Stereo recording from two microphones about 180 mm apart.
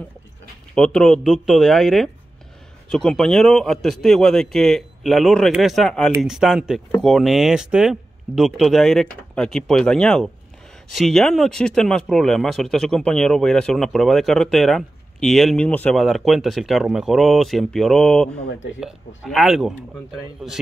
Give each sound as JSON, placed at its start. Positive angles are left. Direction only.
{"t": 0.7, "sound": "speech", "side_deg": 5}
{"t": 18.5, "sound": "speech", "side_deg": 90}
{"t": 18.8, "sound": "speech", "side_deg": 0}